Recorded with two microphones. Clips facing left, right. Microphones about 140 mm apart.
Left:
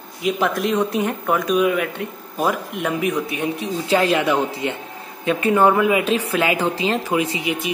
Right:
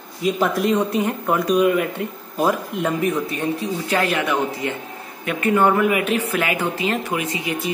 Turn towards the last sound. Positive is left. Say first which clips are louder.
# left 3 dB
turn(degrees=25)  # may be behind; listen again after turning